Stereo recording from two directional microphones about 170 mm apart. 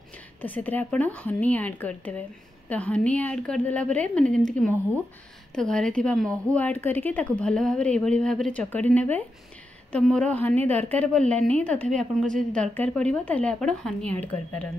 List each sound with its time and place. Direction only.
0.4 s a woman's voice: 10° left (ahead or behind)